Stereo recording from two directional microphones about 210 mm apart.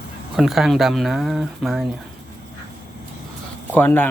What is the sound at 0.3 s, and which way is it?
Speech, centre (ahead or behind).